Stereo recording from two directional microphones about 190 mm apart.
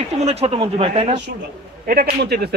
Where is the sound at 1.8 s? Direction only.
50° right (ahead or behind).